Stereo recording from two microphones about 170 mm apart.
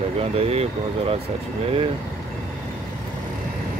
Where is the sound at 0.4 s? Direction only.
35° right (ahead or behind).